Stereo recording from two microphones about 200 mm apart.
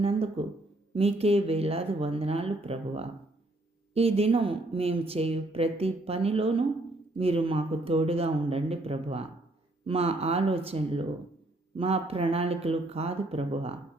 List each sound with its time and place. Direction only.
0.0 s a woman's voice: 30° right (ahead or behind)